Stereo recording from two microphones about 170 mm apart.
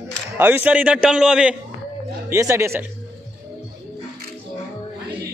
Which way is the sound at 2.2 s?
15° right (ahead or behind).